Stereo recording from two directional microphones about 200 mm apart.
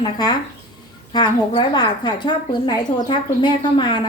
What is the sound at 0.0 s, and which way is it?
A woman's voice, 20° left (ahead or behind).